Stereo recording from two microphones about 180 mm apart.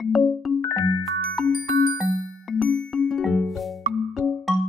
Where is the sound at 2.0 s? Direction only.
5° left (ahead or behind).